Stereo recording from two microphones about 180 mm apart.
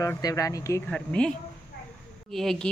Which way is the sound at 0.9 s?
5° left (ahead or behind).